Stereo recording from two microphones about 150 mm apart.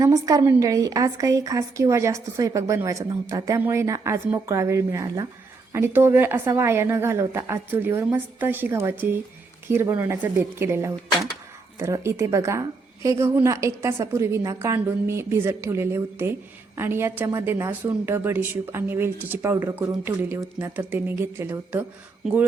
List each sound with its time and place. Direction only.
0.0 s a woman's voice: 25° right (ahead or behind)
5.7 s a woman's voice: 15° right (ahead or behind)